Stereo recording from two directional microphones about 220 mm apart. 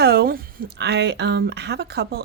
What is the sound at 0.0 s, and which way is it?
Speech, 45° right (ahead or behind).